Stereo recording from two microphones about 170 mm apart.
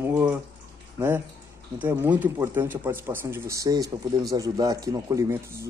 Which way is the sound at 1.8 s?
10° right (ahead or behind).